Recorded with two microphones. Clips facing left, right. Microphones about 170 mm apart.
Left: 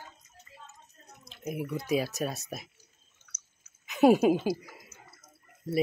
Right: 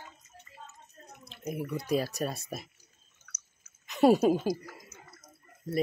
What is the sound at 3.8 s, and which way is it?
A woman's voice, 5° left (ahead or behind).